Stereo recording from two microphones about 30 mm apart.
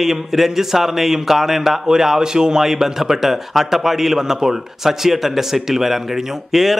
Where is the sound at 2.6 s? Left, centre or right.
Centre.